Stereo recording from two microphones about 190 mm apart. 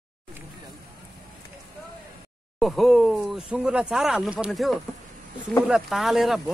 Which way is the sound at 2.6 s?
Centre (ahead or behind).